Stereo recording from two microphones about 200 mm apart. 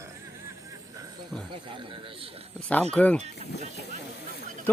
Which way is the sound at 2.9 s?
5° left (ahead or behind).